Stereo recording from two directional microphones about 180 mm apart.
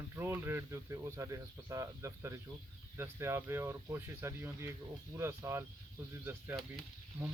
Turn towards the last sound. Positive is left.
turn(degrees=-10)  # may be behind; listen again after turning